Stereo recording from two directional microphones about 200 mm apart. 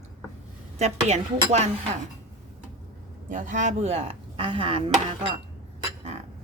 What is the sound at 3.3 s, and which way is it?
Speech, 40° right (ahead or behind).